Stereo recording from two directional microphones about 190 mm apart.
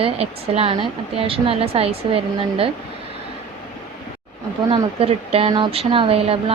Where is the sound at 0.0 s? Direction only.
30° right (ahead or behind).